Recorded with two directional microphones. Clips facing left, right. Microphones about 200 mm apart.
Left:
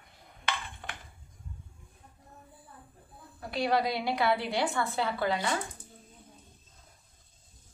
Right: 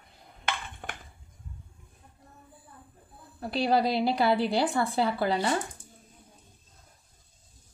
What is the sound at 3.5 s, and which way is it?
A woman's voice, 30° right (ahead or behind).